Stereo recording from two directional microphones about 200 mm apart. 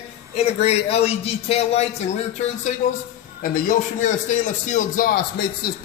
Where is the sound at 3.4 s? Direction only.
45° left (ahead or behind).